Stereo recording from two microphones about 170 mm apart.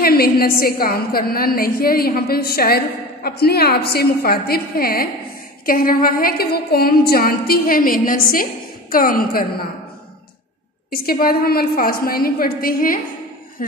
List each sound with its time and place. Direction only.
0.0 s a woman's voice: 60° left (ahead or behind)
10.9 s a woman's voice: 60° left (ahead or behind)